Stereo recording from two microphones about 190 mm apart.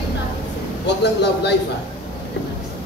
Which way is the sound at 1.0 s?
65° left (ahead or behind).